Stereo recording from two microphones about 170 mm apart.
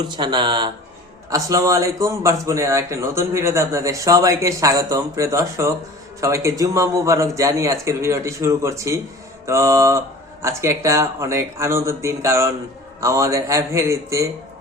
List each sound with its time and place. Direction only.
0.0 s a man's voice: 25° right (ahead or behind)